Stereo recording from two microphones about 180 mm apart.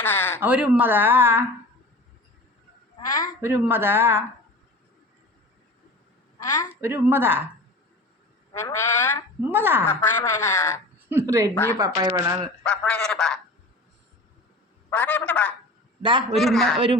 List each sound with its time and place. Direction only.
0.0 s speech: 10° left (ahead or behind)
0.3 s speech: 5° right (ahead or behind)
3.4 s speech: 10° right (ahead or behind)
6.4 s a woman's voice: 15° left (ahead or behind)
6.8 s speech: 10° right (ahead or behind)
8.5 s speech: 15° left (ahead or behind)
9.4 s speech: 10° right (ahead or behind)
9.9 s speech: 15° left (ahead or behind)
11.1 s speech: 15° right (ahead or behind)
11.5 s speech: 15° left (ahead or behind)
11.8 s speech: 20° right (ahead or behind)
12.6 s speech: 5° left (ahead or behind)
14.8 s a man's voice: 10° left (ahead or behind)